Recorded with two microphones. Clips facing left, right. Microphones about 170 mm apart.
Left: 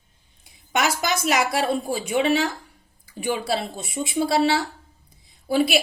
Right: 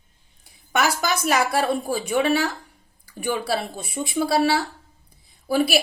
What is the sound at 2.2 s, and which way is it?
Speech, 25° left (ahead or behind).